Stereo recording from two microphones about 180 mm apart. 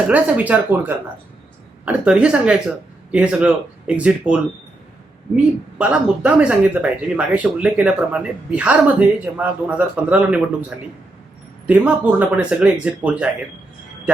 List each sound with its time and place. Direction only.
0.1 s speech: 10° right (ahead or behind)
5.7 s speech: 5° right (ahead or behind)
11.6 s speech: 5° right (ahead or behind)